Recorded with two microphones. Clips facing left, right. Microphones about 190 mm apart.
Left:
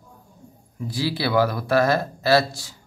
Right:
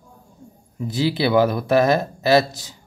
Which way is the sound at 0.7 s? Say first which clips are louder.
Right 4 dB; 20° right (ahead or behind).